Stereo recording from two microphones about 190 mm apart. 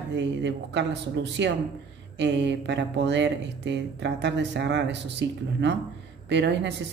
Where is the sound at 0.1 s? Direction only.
70° right (ahead or behind).